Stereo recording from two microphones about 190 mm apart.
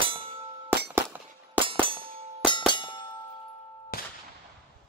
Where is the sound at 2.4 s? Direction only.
25° left (ahead or behind).